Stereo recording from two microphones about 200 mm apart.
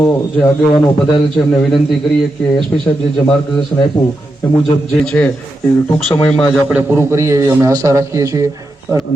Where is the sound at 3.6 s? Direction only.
20° left (ahead or behind).